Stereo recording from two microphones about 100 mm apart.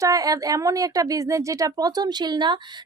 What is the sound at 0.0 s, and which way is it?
Speech, 35° right (ahead or behind).